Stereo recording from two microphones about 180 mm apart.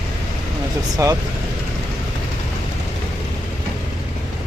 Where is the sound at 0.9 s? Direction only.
20° right (ahead or behind).